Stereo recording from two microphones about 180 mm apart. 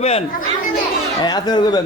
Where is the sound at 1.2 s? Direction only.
20° left (ahead or behind).